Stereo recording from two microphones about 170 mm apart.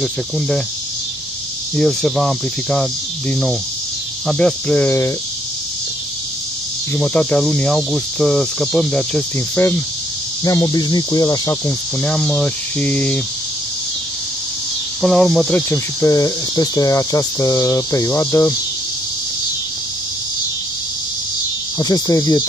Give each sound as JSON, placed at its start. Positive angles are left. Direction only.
{"t": 1.8, "sound": "speech", "side_deg": 5}
{"t": 7.0, "sound": "speech", "side_deg": 5}
{"t": 10.4, "sound": "speech", "side_deg": 20}
{"t": 12.0, "sound": "speech", "side_deg": 5}
{"t": 15.0, "sound": "speech", "side_deg": 5}
{"t": 15.7, "sound": "speech", "side_deg": 20}
{"t": 21.7, "sound": "speech", "side_deg": 20}